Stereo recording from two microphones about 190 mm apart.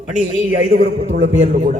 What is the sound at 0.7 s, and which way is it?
Speech, 30° right (ahead or behind).